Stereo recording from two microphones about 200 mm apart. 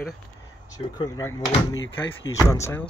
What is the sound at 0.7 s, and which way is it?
Speech, 20° left (ahead or behind).